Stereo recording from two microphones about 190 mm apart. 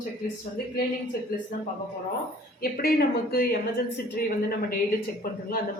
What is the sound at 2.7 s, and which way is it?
Speech, 50° left (ahead or behind).